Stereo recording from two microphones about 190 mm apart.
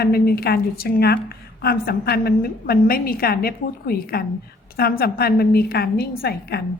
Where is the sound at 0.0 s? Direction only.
55° left (ahead or behind).